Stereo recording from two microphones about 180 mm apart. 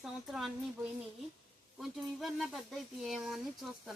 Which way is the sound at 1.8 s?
Centre (ahead or behind).